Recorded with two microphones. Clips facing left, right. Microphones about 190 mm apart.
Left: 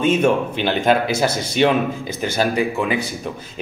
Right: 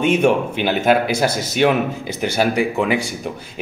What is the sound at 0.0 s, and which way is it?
Speech, 15° right (ahead or behind).